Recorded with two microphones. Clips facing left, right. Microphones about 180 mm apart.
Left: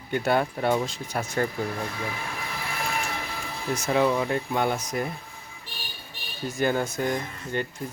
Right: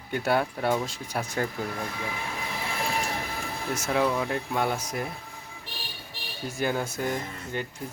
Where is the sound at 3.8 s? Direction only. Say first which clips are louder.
Left 3 dB; centre (ahead or behind).